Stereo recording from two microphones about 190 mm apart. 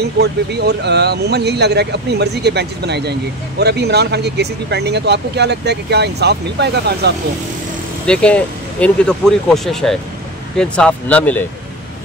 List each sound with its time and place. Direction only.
0.0 s speech: 60° right (ahead or behind)
8.1 s speech: 5° left (ahead or behind)